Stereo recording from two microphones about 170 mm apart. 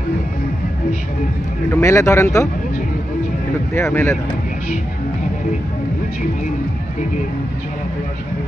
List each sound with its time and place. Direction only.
1.7 s speech: 15° left (ahead or behind)
3.7 s speech: 15° left (ahead or behind)